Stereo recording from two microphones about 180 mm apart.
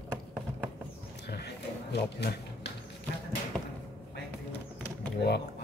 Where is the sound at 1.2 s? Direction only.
70° left (ahead or behind).